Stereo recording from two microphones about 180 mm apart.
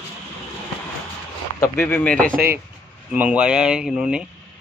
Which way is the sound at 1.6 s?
15° left (ahead or behind).